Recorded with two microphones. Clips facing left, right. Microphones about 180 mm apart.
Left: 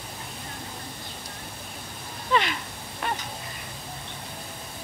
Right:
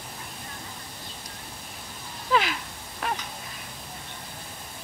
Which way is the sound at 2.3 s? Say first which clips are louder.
Even; centre (ahead or behind).